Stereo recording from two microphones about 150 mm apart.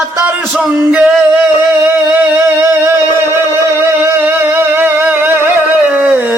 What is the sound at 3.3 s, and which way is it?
Music, 15° right (ahead or behind).